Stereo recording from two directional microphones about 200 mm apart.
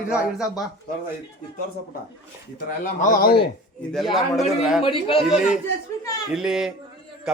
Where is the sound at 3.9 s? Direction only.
Centre (ahead or behind).